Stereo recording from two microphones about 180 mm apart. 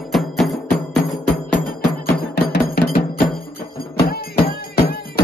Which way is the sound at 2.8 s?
55° left (ahead or behind).